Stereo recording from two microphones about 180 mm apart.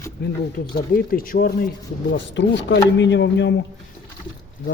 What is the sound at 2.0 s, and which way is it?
Speech, 85° left.